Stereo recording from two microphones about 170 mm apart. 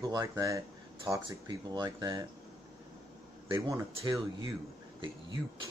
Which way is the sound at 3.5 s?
15° right (ahead or behind).